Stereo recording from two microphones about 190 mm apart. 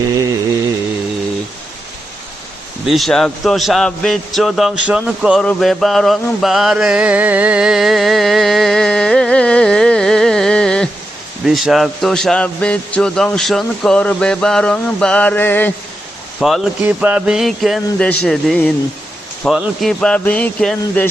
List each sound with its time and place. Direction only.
0.0 s a sound: 15° right (ahead or behind)
2.8 s a man's voice: centre (ahead or behind)
5.5 s mantra: centre (ahead or behind)
11.4 s a man's voice: centre (ahead or behind)
16.4 s a man's voice: centre (ahead or behind)